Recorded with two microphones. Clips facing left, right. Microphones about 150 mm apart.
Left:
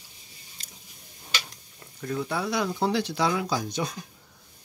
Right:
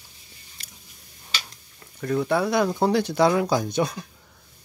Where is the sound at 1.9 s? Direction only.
60° right (ahead or behind).